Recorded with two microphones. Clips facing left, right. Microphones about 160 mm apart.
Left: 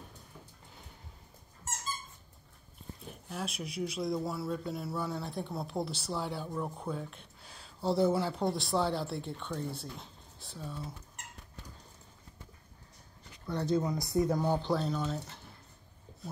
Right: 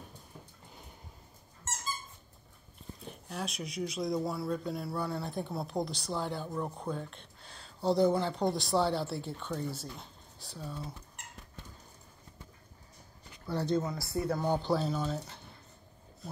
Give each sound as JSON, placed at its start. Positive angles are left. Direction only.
{"t": 3.3, "sound": "speech", "side_deg": 5}
{"t": 13.5, "sound": "speech", "side_deg": 0}
{"t": 13.7, "sound": "speech", "side_deg": 15}
{"t": 14.5, "sound": "speech", "side_deg": 0}